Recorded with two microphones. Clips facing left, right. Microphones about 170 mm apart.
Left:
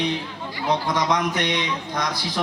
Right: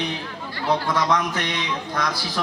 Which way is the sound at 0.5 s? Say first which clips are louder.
Right 1 dB; 15° left (ahead or behind).